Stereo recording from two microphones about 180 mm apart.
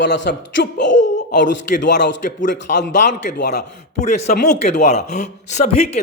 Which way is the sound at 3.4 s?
65° left (ahead or behind).